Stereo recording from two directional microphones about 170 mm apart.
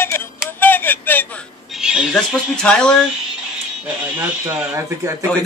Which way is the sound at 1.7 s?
5° right (ahead or behind).